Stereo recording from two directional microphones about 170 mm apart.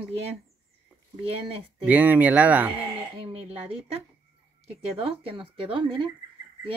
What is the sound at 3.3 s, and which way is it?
Speech, 35° right (ahead or behind).